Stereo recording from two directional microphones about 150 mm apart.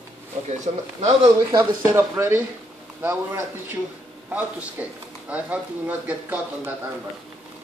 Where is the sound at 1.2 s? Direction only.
30° right (ahead or behind).